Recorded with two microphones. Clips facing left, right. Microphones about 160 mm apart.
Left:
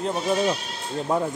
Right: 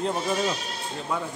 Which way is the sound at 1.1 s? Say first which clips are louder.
Left 6 dB; 40° left (ahead or behind).